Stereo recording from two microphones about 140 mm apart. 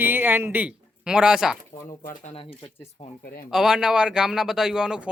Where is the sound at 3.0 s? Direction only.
50° left (ahead or behind).